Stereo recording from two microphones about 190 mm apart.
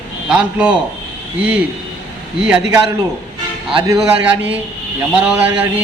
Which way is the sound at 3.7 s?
20° right (ahead or behind).